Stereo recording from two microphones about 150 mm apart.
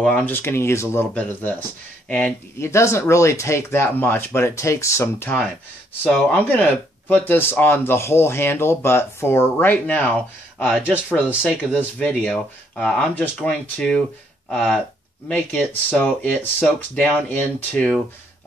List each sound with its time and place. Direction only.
0.0 s speech: 10° left (ahead or behind)